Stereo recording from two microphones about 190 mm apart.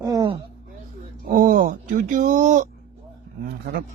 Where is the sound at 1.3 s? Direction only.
45° right (ahead or behind).